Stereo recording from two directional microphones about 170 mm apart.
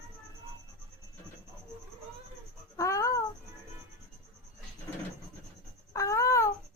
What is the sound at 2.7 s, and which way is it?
Babbling, 20° left (ahead or behind).